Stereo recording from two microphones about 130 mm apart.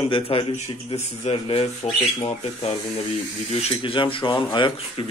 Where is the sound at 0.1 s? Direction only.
40° left (ahead or behind).